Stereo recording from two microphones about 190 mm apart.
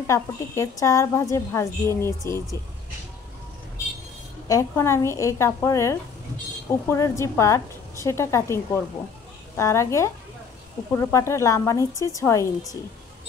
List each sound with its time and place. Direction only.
0.0 s a woman's voice: 15° left (ahead or behind)
4.5 s a woman's voice: 15° left (ahead or behind)